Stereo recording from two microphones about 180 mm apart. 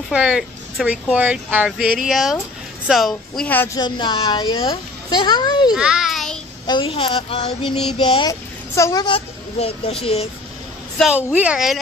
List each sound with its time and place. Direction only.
0.1 s speech: centre (ahead or behind)
3.8 s a child's voice: 25° left (ahead or behind)
5.8 s a sound: 5° right (ahead or behind)
6.7 s a child's voice: 30° left (ahead or behind)
11.0 s speech: 5° right (ahead or behind)